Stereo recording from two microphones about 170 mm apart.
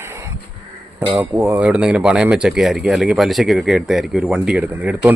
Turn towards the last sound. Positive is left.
turn(degrees=-10)  # may be behind; listen again after turning